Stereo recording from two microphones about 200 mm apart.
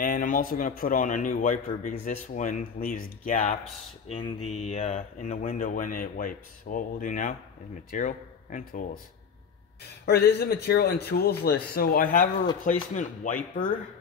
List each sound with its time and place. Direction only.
0.0 s a man's voice: 45° left (ahead or behind)
4.1 s a man's voice: 30° left (ahead or behind)
10.0 s a man's voice: 55° left (ahead or behind)